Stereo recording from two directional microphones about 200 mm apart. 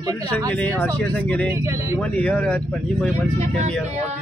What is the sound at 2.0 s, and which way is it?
Speech, 5° left (ahead or behind).